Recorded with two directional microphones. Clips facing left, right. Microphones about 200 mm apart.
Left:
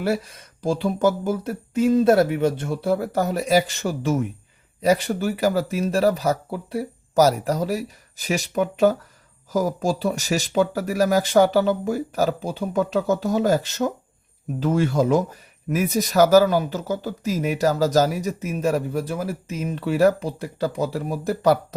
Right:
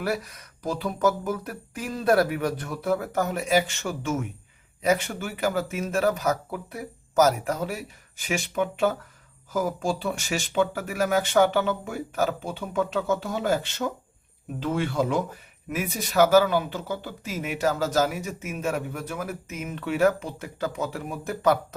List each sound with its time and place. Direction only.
0.0 s speech: 30° left (ahead or behind)